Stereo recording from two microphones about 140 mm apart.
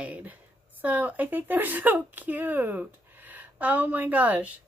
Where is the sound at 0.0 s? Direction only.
10° right (ahead or behind).